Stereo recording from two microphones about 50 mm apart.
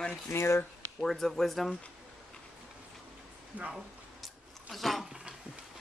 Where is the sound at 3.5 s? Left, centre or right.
Right.